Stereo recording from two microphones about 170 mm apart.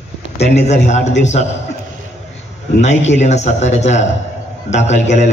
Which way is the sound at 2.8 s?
40° left (ahead or behind).